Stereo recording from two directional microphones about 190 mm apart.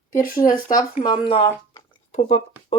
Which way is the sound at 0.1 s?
45° left (ahead or behind).